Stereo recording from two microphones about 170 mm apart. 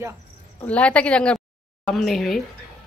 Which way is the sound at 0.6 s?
10° left (ahead or behind).